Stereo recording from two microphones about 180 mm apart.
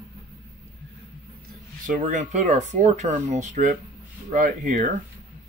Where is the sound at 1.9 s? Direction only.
45° right (ahead or behind).